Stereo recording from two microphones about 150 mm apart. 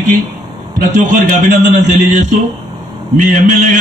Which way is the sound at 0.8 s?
55° right (ahead or behind).